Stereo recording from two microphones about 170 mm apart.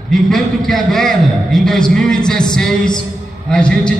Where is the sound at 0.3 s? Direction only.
Centre (ahead or behind).